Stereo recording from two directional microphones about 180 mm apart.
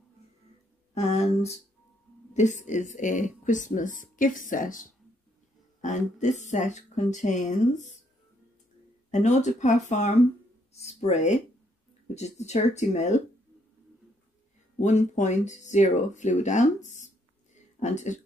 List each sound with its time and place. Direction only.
0.9 s speech: 35° left (ahead or behind)
9.1 s speech: 40° left (ahead or behind)
14.8 s speech: 40° left (ahead or behind)